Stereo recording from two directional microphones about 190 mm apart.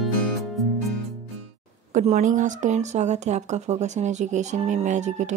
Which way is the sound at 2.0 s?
40° right (ahead or behind).